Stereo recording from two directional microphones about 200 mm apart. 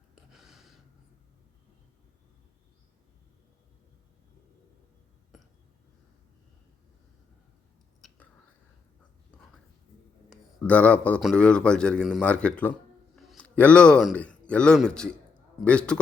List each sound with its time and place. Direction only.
0.3 s a sound: centre (ahead or behind)
8.0 s whispering: centre (ahead or behind)
10.2 s a man's voice: 5° left (ahead or behind)